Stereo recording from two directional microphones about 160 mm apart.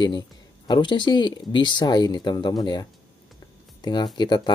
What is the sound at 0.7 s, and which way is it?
Speech, 30° left (ahead or behind).